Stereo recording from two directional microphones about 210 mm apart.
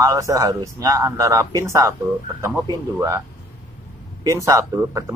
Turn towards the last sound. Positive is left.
turn(degrees=-15)  # may be behind; listen again after turning